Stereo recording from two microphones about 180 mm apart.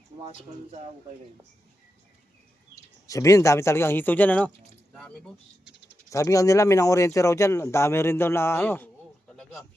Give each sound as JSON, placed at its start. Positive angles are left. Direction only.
{"t": 0.2, "sound": "speech", "side_deg": -35}
{"t": 3.1, "sound": "speech", "side_deg": 20}
{"t": 6.1, "sound": "speech", "side_deg": 15}
{"t": 9.3, "sound": "a sound", "side_deg": 0}